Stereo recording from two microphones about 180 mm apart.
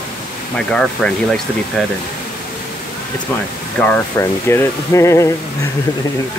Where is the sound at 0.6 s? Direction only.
5° left (ahead or behind).